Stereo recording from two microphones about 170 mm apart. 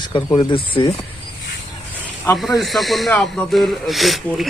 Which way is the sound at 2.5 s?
Centre (ahead or behind).